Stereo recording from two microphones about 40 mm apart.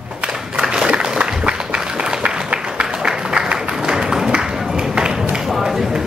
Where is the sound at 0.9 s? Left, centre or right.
Right.